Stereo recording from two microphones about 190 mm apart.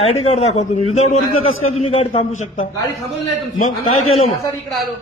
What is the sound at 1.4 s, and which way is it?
Speech, 90° left.